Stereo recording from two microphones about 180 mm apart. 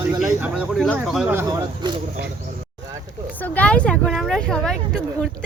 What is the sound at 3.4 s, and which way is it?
Speech, 5° left (ahead or behind).